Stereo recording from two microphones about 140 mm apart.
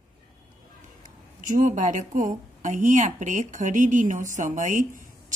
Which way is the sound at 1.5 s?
65° right (ahead or behind).